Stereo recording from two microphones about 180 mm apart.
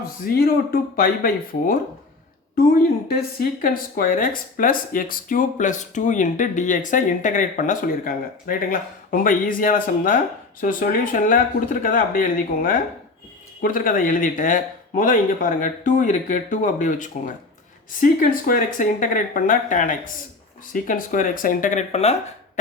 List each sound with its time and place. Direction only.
0.3 s speech: 55° left (ahead or behind); by 22.1 s 40° left (ahead or behind)